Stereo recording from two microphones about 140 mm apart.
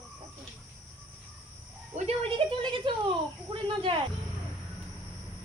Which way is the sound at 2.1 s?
40° right (ahead or behind).